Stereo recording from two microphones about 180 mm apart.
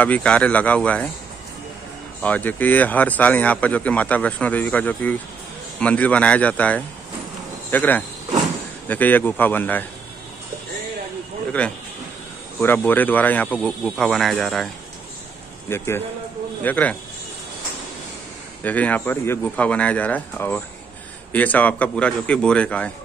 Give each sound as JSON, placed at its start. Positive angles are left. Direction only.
{"t": 0.0, "sound": "speech", "side_deg": 5}
{"t": 2.2, "sound": "speech", "side_deg": 10}
{"t": 11.6, "sound": "speech", "side_deg": 5}
{"t": 15.7, "sound": "speech", "side_deg": 15}
{"t": 18.6, "sound": "speech", "side_deg": 10}